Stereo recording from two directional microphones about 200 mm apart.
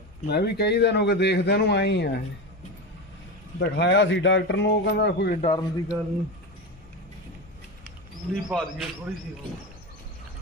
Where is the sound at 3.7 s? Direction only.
60° left (ahead or behind).